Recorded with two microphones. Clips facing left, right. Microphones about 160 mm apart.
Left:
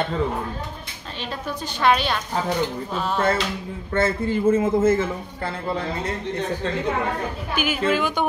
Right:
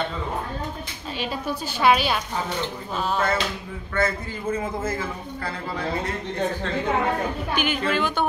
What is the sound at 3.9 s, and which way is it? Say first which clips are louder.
A woman's voice: left 4 dB; 25° left (ahead or behind).